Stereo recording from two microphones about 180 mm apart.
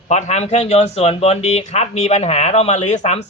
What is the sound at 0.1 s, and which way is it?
Speech, 40° left (ahead or behind).